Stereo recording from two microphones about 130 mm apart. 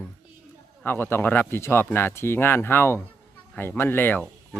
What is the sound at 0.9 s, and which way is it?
A man's voice, 15° left (ahead or behind).